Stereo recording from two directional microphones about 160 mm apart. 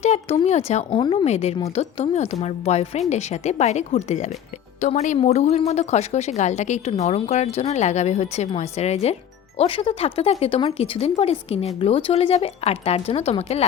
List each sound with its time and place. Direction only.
0.0 s a woman's voice: 45° left (ahead or behind)
0.9 s a woman's voice: 35° left (ahead or behind)